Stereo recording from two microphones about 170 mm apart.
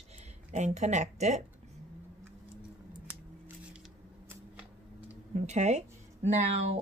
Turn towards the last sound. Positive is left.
turn(degrees=-40)  # may be behind; listen again after turning